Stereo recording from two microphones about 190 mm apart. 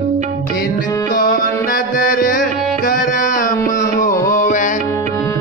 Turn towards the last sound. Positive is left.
turn(degrees=40)  # may be behind; listen again after turning